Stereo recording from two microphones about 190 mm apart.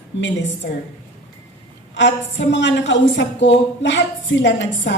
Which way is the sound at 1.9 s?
70° left (ahead or behind).